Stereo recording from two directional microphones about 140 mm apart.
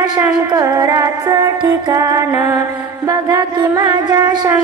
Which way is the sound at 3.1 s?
30° right (ahead or behind).